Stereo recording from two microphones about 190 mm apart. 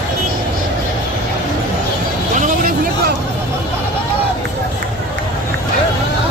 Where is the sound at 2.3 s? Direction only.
45° right (ahead or behind).